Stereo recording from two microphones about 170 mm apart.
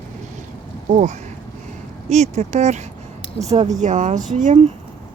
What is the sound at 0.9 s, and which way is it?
Speech, 45° right (ahead or behind).